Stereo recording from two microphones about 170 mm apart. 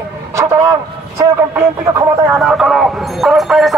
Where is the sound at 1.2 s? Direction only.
15° right (ahead or behind).